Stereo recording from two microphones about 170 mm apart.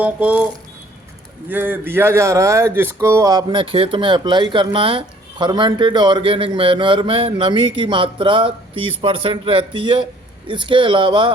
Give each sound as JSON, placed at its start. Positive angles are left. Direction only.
{"t": 0.0, "sound": "speech", "side_deg": -10}
{"t": 1.5, "sound": "speech", "side_deg": -10}